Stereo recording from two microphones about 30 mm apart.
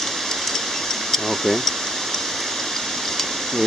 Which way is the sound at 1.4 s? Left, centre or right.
Centre.